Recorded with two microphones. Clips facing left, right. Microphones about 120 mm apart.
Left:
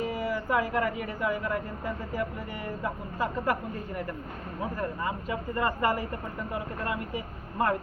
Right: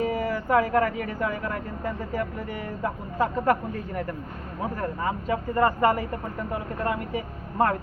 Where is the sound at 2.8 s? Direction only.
40° right (ahead or behind).